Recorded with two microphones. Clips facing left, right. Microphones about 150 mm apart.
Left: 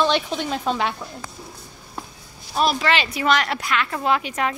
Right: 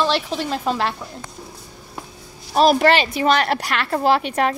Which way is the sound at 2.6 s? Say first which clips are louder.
Right 6 dB; 45° right (ahead or behind).